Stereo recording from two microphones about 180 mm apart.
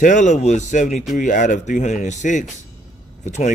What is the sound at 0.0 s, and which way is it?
A man's voice, 40° left (ahead or behind).